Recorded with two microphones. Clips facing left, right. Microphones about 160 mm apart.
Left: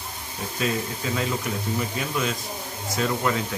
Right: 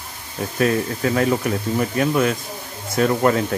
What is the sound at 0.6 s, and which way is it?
Speech, 60° right (ahead or behind).